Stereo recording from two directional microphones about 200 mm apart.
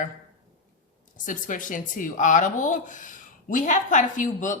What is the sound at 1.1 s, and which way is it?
Speech, 40° left (ahead or behind).